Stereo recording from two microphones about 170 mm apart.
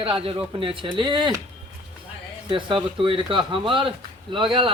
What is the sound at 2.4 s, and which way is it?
A man's voice, 30° right (ahead or behind).